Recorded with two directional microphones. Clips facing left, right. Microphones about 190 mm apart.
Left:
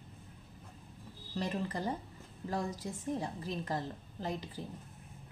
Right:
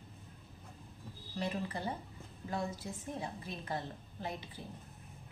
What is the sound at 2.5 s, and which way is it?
A woman's voice, 40° left (ahead or behind).